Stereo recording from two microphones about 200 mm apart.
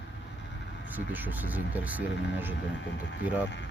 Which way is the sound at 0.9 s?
10° right (ahead or behind).